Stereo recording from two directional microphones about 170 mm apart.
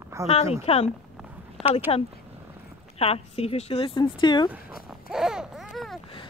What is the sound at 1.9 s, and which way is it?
Speech, 30° left (ahead or behind).